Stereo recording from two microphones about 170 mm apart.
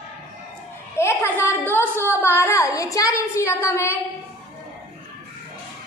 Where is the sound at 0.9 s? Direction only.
15° left (ahead or behind).